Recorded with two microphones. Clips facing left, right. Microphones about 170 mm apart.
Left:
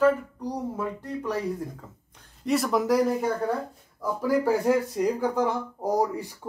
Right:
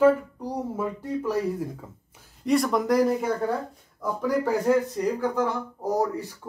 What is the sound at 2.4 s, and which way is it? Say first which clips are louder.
Speech: right 1 dB; centre (ahead or behind).